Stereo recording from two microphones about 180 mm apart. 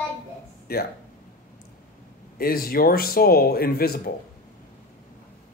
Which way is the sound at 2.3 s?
55° left (ahead or behind).